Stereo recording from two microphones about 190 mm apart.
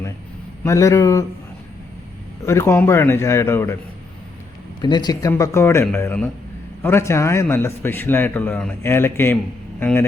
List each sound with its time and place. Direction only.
0.6 s a man's voice: 15° left (ahead or behind)
2.5 s a man's voice: 15° left (ahead or behind)
4.8 s a man's voice: 20° left (ahead or behind)